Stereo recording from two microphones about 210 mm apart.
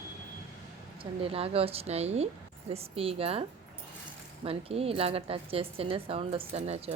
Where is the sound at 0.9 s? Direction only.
25° right (ahead or behind).